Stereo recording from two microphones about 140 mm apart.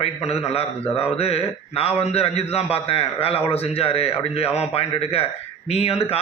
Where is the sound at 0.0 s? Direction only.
50° left (ahead or behind).